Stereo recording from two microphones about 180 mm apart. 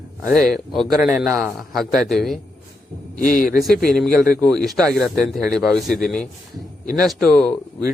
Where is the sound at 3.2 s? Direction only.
45° left (ahead or behind).